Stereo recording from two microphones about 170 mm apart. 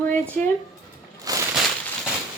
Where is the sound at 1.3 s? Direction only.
20° right (ahead or behind).